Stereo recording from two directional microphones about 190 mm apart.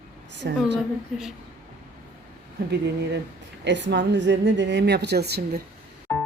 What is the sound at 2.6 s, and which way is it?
A woman's voice, 60° right (ahead or behind).